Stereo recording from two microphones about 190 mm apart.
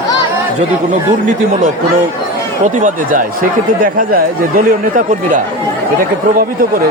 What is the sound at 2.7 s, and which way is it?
Speech, 45° right (ahead or behind).